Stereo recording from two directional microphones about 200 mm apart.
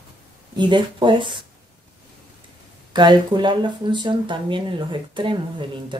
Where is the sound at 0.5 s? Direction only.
25° right (ahead or behind).